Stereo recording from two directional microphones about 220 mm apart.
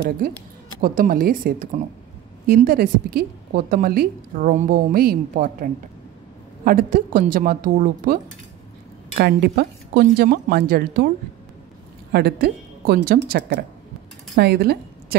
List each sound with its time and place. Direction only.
0.7 s a woman's voice: 40° right (ahead or behind)
9.2 s speech: 45° right (ahead or behind)
12.1 s a woman's voice: 45° right (ahead or behind)